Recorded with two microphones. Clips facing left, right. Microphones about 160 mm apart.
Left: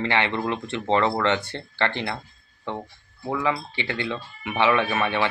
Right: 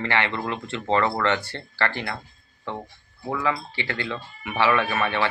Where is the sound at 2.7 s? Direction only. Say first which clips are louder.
Left 1 dB; 20° left (ahead or behind).